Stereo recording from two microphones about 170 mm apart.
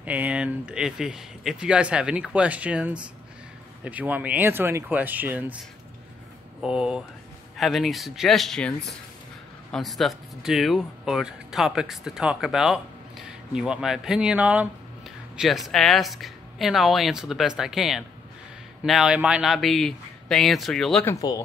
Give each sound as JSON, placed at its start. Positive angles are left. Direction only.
{"t": 0.0, "sound": "speech", "side_deg": -10}
{"t": 21.0, "sound": "speech", "side_deg": 20}